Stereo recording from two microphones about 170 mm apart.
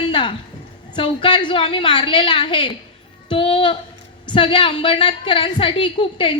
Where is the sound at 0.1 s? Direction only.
30° left (ahead or behind).